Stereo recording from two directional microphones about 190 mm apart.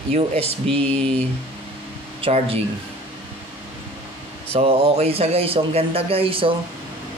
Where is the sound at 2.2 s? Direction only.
30° right (ahead or behind).